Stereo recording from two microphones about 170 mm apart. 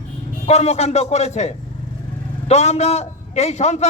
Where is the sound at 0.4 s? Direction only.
40° left (ahead or behind).